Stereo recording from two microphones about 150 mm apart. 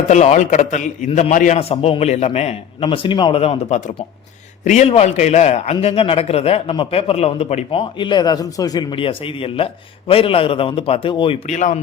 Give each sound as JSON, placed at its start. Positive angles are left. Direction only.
{"t": 0.1, "sound": "a man's voice", "side_deg": 50}
{"t": 1.5, "sound": "a man's voice", "side_deg": 40}
{"t": 11.4, "sound": "a man's voice", "side_deg": 50}